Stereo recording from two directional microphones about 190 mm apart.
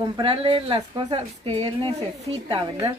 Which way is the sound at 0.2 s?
30° right (ahead or behind).